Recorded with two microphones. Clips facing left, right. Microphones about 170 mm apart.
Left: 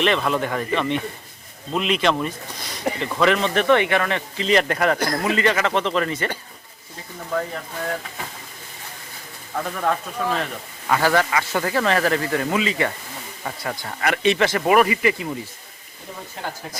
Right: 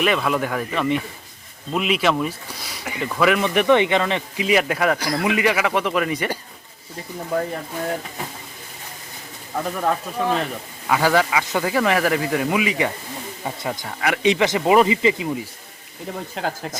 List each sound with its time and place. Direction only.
0.0 s a man's voice: 5° right (ahead or behind)
7.3 s speech: 25° right (ahead or behind)
9.6 s a man's voice: 10° right (ahead or behind)
13.8 s a man's voice: 5° right (ahead or behind)
16.4 s speech: 90° right